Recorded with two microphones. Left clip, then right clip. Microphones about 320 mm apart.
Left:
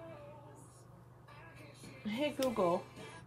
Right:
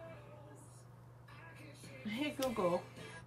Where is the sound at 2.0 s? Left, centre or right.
Centre.